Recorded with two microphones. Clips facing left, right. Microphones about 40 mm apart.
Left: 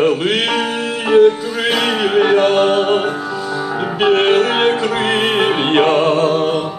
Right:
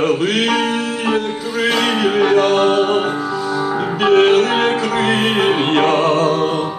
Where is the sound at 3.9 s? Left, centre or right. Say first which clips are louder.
Right 1 dB; left.